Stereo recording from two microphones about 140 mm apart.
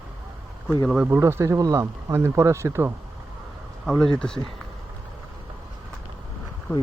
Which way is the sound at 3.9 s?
5° left (ahead or behind).